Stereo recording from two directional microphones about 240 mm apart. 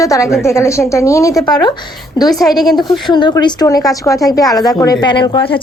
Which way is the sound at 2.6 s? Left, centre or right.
Centre.